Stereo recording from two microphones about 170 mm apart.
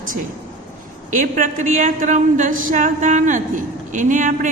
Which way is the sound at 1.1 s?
50° right (ahead or behind).